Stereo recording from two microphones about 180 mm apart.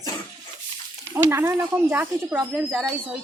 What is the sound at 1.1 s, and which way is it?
A woman's voice, 15° right (ahead or behind).